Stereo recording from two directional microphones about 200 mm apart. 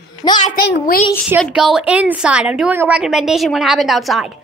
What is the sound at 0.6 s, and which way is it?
Speech, 50° left (ahead or behind).